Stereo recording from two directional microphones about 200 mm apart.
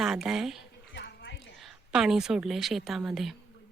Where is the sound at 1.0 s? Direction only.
60° left (ahead or behind).